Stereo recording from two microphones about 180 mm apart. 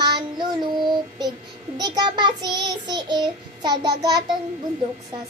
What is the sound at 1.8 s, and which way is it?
Child singing, 25° right (ahead or behind).